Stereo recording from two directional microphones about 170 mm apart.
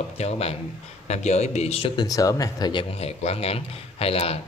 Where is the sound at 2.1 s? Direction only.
20° left (ahead or behind).